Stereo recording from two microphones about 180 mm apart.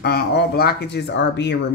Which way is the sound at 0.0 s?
60° left (ahead or behind).